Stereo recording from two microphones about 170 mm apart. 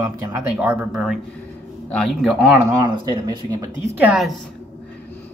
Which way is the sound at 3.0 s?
25° right (ahead or behind).